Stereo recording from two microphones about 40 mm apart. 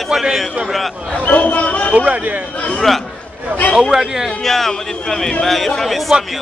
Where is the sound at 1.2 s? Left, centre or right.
Left.